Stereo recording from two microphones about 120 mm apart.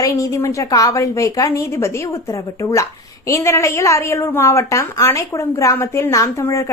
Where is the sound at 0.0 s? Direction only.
25° left (ahead or behind).